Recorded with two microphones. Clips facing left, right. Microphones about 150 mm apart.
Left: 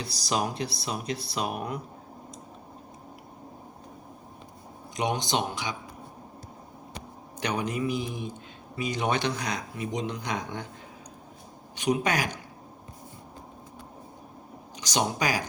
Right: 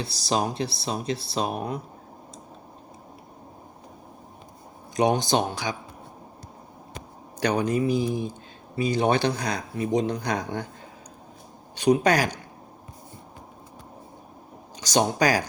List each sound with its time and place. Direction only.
0.0 s speech: 30° right (ahead or behind)
4.9 s speech: 35° right (ahead or behind)
7.4 s speech: 35° right (ahead or behind)
11.7 s speech: 35° right (ahead or behind)
14.8 s speech: 35° right (ahead or behind)